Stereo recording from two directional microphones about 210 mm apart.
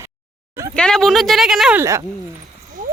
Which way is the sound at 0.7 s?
5° left (ahead or behind).